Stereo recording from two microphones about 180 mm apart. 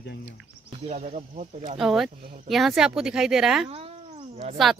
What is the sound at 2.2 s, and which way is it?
Speech, 45° right (ahead or behind).